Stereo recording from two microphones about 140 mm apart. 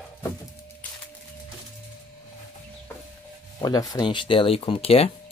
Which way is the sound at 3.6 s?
30° left (ahead or behind).